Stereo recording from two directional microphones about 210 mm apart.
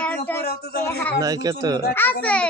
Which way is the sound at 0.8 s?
10° left (ahead or behind).